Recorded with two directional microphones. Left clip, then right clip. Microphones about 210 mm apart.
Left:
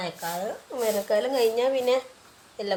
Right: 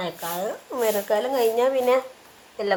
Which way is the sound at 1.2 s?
5° left (ahead or behind).